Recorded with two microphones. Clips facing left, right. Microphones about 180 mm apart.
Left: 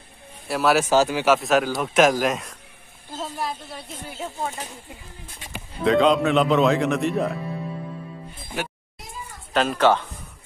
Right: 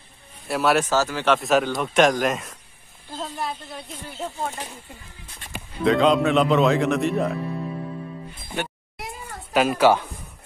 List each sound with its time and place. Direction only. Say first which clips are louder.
0.5 s speech: even; centre (ahead or behind)
0.8 s speech: left 3 dB; 15° left (ahead or behind)
5.9 s speech: even; centre (ahead or behind)
8.9 s a sound: right 6 dB; 65° right (ahead or behind)
9.5 s speech: right 1 dB; 10° right (ahead or behind)